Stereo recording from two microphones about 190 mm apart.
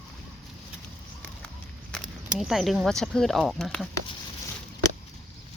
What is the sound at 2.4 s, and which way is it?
Speech, centre (ahead or behind).